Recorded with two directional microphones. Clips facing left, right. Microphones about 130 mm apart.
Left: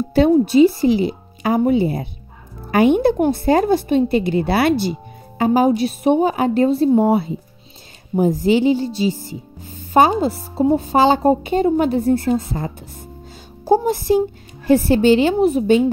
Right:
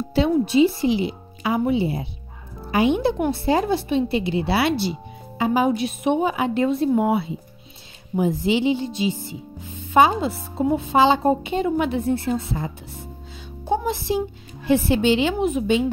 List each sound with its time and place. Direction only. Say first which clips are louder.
0.1 s a woman's voice: left 6 dB; 45° left (ahead or behind)